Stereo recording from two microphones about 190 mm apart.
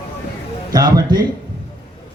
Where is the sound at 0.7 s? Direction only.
20° right (ahead or behind).